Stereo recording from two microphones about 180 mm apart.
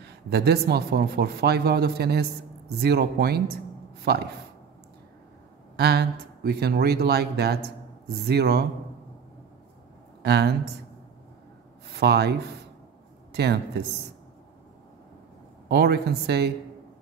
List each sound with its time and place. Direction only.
0.0 s a man's voice: 60° right (ahead or behind)
5.8 s a man's voice: 60° right (ahead or behind)
10.2 s speech: 65° right (ahead or behind)
11.9 s speech: 65° right (ahead or behind)
15.7 s a man's voice: 60° right (ahead or behind)